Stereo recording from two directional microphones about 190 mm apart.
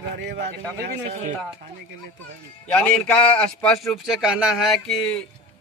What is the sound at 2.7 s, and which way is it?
A man's voice, 5° left (ahead or behind).